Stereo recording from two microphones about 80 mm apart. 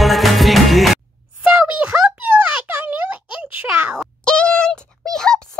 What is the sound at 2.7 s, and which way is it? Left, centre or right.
Music, centre.